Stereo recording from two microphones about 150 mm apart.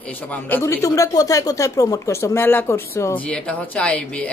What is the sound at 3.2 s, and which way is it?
A man's voice, 10° left (ahead or behind).